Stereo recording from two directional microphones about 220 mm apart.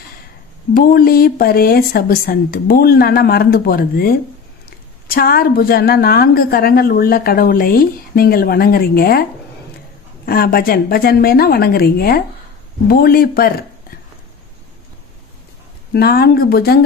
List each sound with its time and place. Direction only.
0.7 s a woman's voice: 40° left (ahead or behind)
10.2 s a woman's voice: 45° left (ahead or behind)
15.9 s a woman's voice: 45° left (ahead or behind)